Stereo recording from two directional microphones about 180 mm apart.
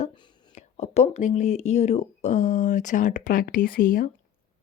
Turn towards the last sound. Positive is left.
turn(degrees=55)  # may be behind; listen again after turning